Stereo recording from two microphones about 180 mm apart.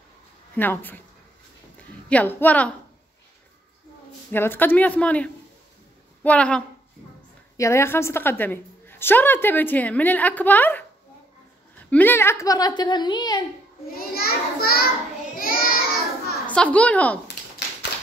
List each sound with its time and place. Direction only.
0.6 s a woman's voice: 10° left (ahead or behind)
2.0 s a woman's voice: 10° left (ahead or behind)
4.3 s a woman's voice: 10° left (ahead or behind)
11.9 s a woman's voice: 10° left (ahead or behind)
13.9 s a child's voice: 55° left (ahead or behind)
15.3 s child singing: 55° left (ahead or behind)
16.4 s a woman's voice: 5° left (ahead or behind)